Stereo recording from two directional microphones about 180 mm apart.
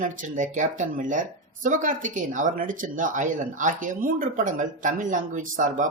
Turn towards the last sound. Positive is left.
turn(degrees=-45)  # may be behind; listen again after turning